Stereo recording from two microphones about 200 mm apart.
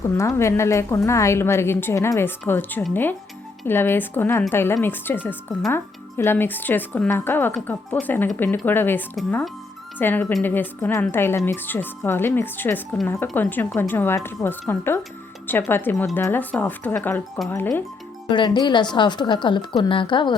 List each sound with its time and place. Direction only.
0.2 s speech: 15° left (ahead or behind)
18.3 s a woman's voice: 25° left (ahead or behind)